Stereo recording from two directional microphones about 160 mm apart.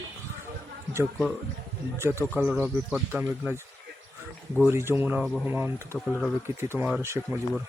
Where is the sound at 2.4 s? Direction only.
5° right (ahead or behind).